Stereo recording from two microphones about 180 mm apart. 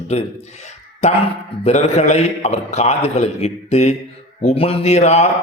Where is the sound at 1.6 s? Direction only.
35° left (ahead or behind).